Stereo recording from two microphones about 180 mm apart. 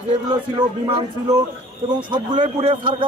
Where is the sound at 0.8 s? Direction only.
25° right (ahead or behind).